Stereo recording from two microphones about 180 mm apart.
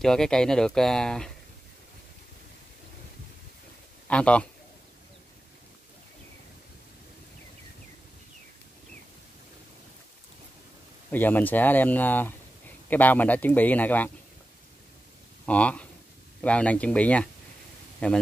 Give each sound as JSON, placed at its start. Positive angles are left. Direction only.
{"t": 0.0, "sound": "speech", "side_deg": 5}
{"t": 4.1, "sound": "speech", "side_deg": 5}
{"t": 11.1, "sound": "speech", "side_deg": 10}
{"t": 15.4, "sound": "speech", "side_deg": 5}